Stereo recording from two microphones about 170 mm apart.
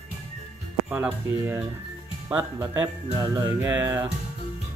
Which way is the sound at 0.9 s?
10° right (ahead or behind).